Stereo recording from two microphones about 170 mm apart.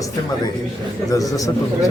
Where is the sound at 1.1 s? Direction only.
20° left (ahead or behind).